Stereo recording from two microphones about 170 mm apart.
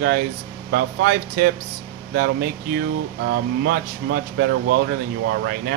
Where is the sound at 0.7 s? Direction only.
65° right (ahead or behind).